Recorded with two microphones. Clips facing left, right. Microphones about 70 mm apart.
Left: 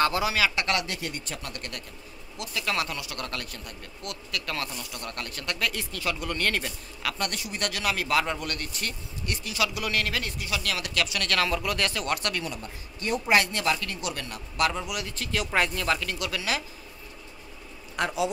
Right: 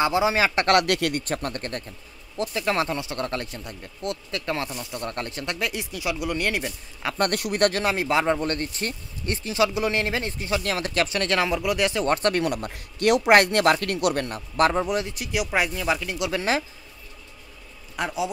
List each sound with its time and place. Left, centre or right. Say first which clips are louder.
0.0 s speech: right 3 dB; right
0.7 s a man's voice: right 9 dB; right; by 6.7 s centre
7.2 s a man's voice: right 13 dB; right
7.8 s speech: right 4 dB; right
12.1 s speech: right 7 dB; right
12.4 s a man's voice: right 9 dB; right
15.0 s speech: right 3 dB; centre
16.3 s speech: right 7 dB; right
17.9 s speech: even; centre